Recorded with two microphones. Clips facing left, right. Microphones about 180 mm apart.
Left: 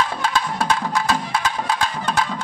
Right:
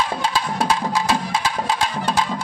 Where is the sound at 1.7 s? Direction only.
30° right (ahead or behind).